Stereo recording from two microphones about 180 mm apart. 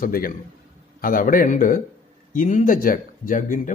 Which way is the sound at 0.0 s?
50° left (ahead or behind).